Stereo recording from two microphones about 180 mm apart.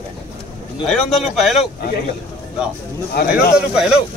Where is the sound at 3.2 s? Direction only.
65° left (ahead or behind).